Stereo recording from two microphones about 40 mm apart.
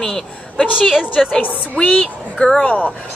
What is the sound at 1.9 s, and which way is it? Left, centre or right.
Speech, left.